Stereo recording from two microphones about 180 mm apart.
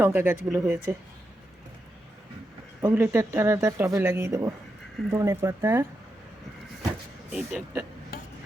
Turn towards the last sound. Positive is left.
turn(degrees=-5)  # may be behind; listen again after turning